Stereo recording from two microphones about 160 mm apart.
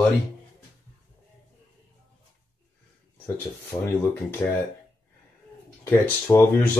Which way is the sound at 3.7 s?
25° left (ahead or behind).